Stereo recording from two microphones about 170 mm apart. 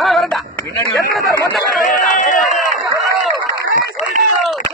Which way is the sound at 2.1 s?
50° left (ahead or behind).